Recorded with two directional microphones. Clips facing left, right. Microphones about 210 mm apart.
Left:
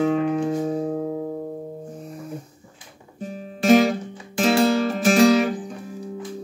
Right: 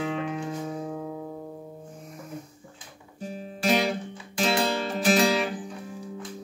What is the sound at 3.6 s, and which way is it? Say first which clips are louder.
Music: left 9 dB; 45° left (ahead or behind).